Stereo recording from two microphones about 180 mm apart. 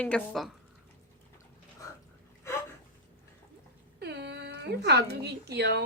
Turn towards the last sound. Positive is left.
turn(degrees=-65)  # may be behind; listen again after turning